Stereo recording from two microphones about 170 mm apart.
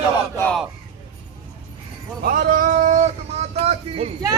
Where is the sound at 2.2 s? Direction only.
55° right (ahead or behind).